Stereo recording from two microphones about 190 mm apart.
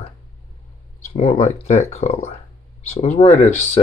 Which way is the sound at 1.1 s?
30° left (ahead or behind).